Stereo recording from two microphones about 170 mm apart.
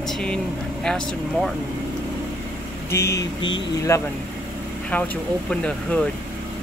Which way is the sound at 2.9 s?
15° left (ahead or behind).